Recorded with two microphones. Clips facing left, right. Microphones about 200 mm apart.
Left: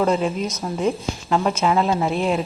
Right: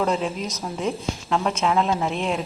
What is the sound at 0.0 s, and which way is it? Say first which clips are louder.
A woman's voice: left 4 dB; centre (ahead or behind).